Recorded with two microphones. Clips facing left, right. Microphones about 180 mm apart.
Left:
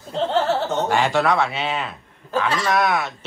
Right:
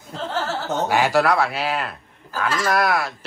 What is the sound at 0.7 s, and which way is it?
A man's voice, 5° right (ahead or behind).